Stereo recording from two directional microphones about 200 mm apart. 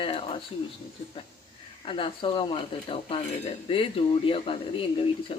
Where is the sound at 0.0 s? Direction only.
30° left (ahead or behind).